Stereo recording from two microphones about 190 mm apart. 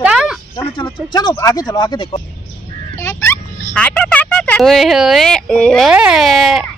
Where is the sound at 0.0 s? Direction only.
5° right (ahead or behind).